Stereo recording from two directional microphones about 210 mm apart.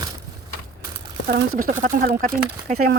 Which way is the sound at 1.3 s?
45° right (ahead or behind).